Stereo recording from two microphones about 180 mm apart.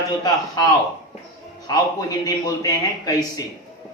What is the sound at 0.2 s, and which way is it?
A man's voice, 20° left (ahead or behind).